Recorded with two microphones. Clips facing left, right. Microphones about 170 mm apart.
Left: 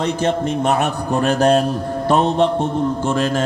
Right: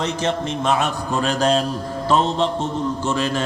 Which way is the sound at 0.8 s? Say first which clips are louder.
Left 3 dB; 60° left (ahead or behind).